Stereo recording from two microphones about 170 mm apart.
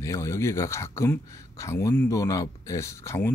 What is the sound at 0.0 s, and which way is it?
Speech, 15° left (ahead or behind).